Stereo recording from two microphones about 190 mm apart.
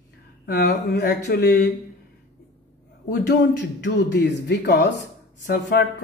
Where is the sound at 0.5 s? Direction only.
60° left (ahead or behind).